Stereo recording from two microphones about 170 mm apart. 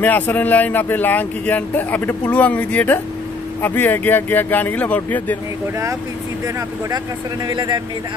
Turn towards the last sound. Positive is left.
turn(degrees=-25)  # may be behind; listen again after turning